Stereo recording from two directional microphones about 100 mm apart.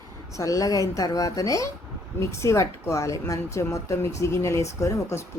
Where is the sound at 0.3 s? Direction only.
35° left (ahead or behind).